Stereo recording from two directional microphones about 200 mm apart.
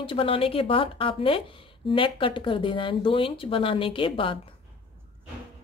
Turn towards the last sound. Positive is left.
turn(degrees=25)  # may be behind; listen again after turning